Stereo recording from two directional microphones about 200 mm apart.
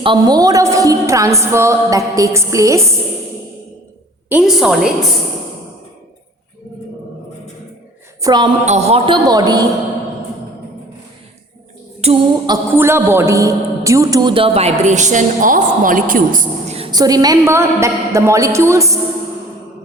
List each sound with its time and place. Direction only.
0.0 s music: 20° right (ahead or behind)
4.3 s a woman's voice: 5° right (ahead or behind)
8.2 s a woman's voice: 20° right (ahead or behind)
8.6 s a man's voice: 35° right (ahead or behind); by 9.6 s 20° right (ahead or behind)
12.0 s a sound: 30° right (ahead or behind)
12.5 s a man's voice: 10° right (ahead or behind); by 16.7 s 40° right (ahead or behind)
16.7 s music: 25° right (ahead or behind)